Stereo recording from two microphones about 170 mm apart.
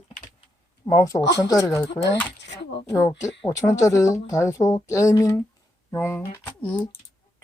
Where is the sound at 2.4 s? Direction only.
90° left.